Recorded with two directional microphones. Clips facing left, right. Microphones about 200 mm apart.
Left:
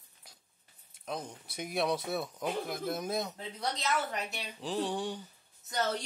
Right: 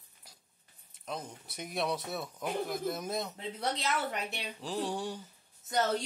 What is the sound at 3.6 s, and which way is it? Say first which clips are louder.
Speech: even; 30° right (ahead or behind).